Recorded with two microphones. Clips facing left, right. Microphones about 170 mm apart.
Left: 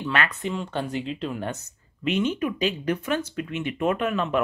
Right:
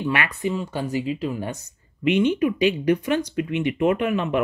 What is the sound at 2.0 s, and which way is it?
Speech, 60° right (ahead or behind).